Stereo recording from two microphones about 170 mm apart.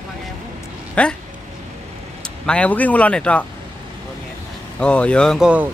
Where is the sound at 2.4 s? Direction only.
5° left (ahead or behind).